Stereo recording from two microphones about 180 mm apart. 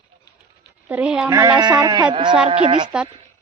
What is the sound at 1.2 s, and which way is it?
Speech, 15° right (ahead or behind).